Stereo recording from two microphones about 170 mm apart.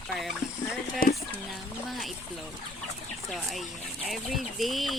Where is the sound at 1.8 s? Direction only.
Centre (ahead or behind).